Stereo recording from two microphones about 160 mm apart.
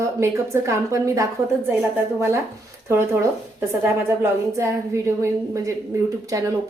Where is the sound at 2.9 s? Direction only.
15° right (ahead or behind).